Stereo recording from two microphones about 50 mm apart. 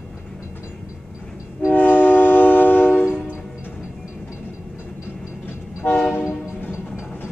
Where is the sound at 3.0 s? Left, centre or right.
Right.